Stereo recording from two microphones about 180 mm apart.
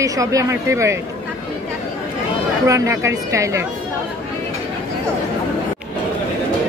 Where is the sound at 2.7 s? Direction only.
15° right (ahead or behind).